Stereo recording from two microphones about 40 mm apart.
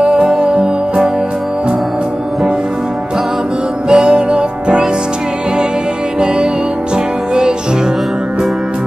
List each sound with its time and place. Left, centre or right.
0.0 s music: right
3.9 s music: right